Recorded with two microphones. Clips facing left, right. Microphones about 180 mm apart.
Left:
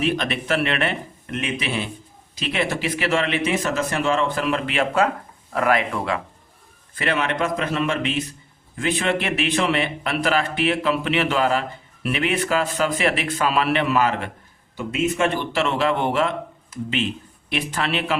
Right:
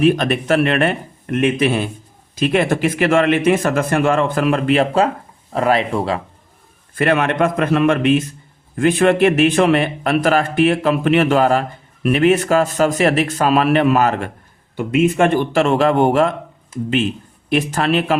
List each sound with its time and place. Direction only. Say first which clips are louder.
0.0 s a man's voice: right 8 dB; 50° right (ahead or behind); by 6.2 s 30° right (ahead or behind)
6.9 s a man's voice: right 7 dB; 55° right (ahead or behind)
17.5 s a man's voice: right 8 dB; 45° right (ahead or behind)